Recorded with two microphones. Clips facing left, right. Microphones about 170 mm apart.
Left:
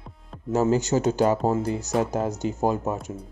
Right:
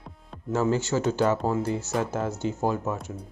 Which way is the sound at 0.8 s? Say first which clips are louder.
Left 3 dB; 15° left (ahead or behind).